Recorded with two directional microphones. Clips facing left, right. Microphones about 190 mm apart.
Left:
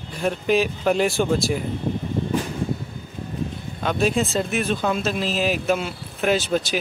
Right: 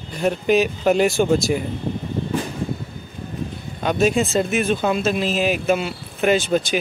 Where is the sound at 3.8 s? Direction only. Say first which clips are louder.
Right 3 dB; 5° right (ahead or behind).